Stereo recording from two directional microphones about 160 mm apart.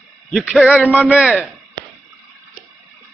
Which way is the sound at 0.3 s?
Centre (ahead or behind).